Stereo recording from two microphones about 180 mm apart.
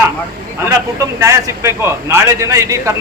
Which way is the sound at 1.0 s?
15° right (ahead or behind).